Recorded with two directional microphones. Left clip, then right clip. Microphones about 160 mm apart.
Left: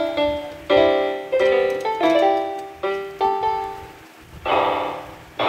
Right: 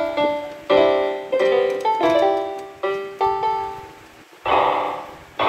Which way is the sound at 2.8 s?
Centre (ahead or behind).